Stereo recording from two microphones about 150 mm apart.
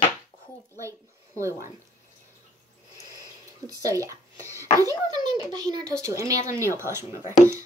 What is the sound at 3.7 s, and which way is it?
Speech, 25° right (ahead or behind).